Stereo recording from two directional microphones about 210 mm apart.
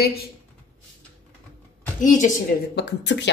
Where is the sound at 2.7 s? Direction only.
55° left (ahead or behind).